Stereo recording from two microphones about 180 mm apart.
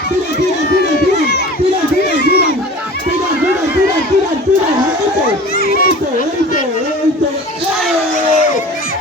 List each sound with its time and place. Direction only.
0.7 s run: 60° left (ahead or behind)
2.1 s a sound: 65° left (ahead or behind)
5.5 s children playing: 55° left (ahead or behind)